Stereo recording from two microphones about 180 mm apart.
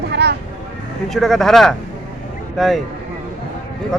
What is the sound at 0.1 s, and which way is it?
Vehicle, 70° right (ahead or behind).